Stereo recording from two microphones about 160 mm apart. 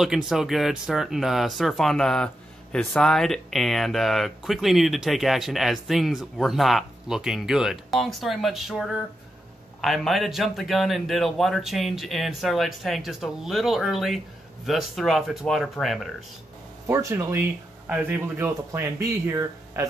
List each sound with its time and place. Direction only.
0.0 s speech: 5° right (ahead or behind)
16.8 s speech: 20° right (ahead or behind)